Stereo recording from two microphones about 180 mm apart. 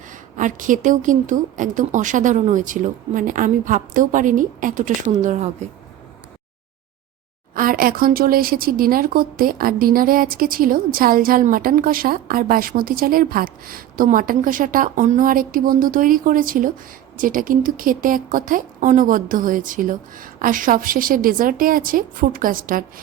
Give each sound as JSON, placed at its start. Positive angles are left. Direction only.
{"t": 0.1, "sound": "speech", "side_deg": -45}
{"t": 7.5, "sound": "speech", "side_deg": -50}